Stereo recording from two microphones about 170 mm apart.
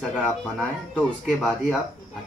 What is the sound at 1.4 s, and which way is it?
Speech, 5° right (ahead or behind).